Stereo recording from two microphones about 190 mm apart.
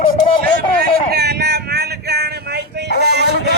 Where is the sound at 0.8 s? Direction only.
55° right (ahead or behind).